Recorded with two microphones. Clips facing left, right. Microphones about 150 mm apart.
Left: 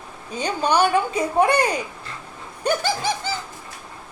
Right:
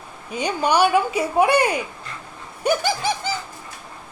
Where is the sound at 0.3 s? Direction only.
10° right (ahead or behind).